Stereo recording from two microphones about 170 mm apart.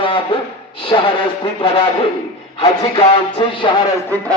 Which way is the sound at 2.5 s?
35° left (ahead or behind).